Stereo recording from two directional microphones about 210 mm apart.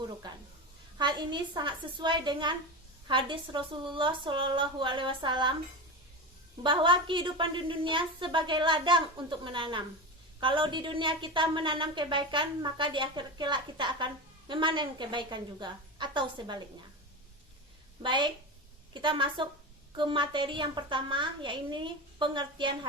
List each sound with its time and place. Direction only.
0.2 s a sound: 20° right (ahead or behind)
0.9 s speech: 20° right (ahead or behind)
6.6 s speech: 25° right (ahead or behind)
18.0 s speech: 20° right (ahead or behind)